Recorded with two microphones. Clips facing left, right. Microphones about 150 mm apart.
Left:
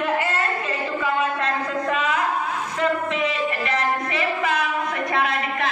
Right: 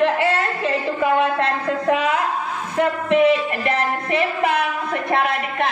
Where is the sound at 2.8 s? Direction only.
60° right (ahead or behind).